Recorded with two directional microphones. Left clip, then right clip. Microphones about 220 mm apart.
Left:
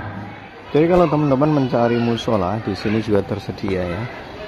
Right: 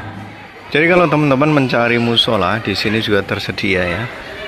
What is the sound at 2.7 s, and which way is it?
Speech, 15° left (ahead or behind).